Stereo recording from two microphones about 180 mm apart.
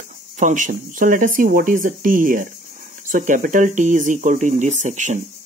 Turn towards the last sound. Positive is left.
turn(degrees=-45)  # may be behind; listen again after turning